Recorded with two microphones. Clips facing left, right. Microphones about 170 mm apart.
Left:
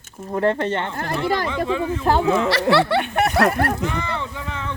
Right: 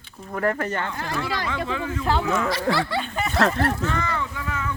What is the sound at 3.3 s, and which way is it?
Speech, 10° left (ahead or behind).